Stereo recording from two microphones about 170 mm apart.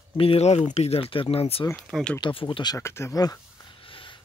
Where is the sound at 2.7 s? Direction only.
15° left (ahead or behind); by 4.1 s 30° left (ahead or behind).